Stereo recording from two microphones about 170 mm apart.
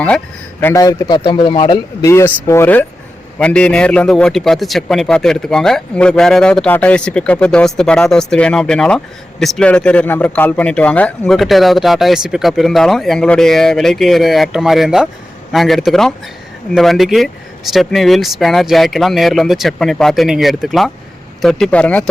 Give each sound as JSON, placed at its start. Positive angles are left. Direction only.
{"t": 0.6, "sound": "a man's voice", "side_deg": 20}